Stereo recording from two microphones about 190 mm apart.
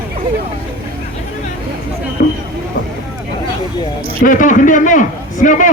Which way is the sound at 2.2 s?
50° left (ahead or behind).